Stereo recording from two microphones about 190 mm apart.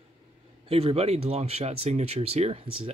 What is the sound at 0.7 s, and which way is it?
Speech, 30° right (ahead or behind).